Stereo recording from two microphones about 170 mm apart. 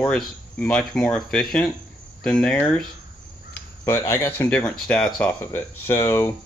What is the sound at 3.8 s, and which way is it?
Speech, 15° left (ahead or behind).